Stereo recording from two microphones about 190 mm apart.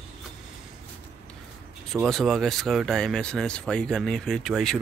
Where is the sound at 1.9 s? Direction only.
Centre (ahead or behind).